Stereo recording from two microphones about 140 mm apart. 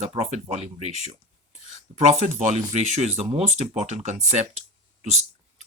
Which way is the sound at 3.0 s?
50° right (ahead or behind).